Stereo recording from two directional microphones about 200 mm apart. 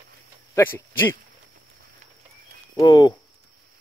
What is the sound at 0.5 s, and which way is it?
Speech, 10° left (ahead or behind).